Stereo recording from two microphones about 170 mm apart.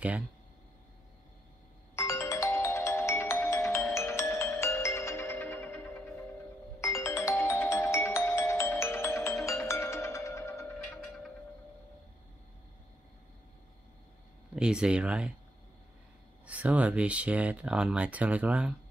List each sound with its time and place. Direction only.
2.0 s music: 15° left (ahead or behind)
14.5 s speech: 5° right (ahead or behind)
16.4 s speech: 10° right (ahead or behind)